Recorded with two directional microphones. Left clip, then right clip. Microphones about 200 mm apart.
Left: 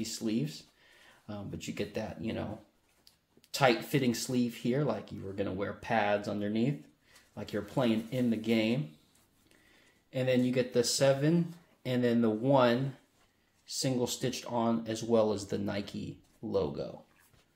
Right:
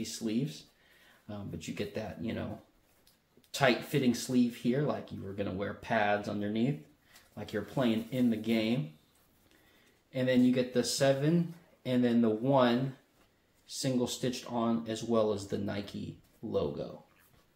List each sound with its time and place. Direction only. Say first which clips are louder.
0.0 s speech: left 1 dB; 35° left (ahead or behind)
3.5 s speech: left 1 dB; 35° left (ahead or behind)
10.1 s speech: right 1 dB; 35° left (ahead or behind)